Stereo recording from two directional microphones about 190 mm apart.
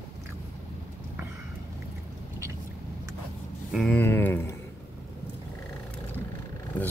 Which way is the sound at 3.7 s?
5° left (ahead or behind).